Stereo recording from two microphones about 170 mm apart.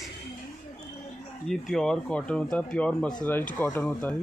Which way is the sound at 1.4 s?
Centre (ahead or behind).